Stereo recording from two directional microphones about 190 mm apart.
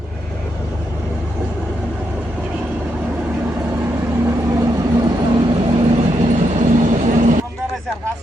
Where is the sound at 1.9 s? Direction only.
10° right (ahead or behind); by 6.0 s 30° right (ahead or behind).